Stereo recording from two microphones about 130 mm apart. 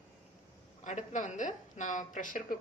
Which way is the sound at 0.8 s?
70° left (ahead or behind).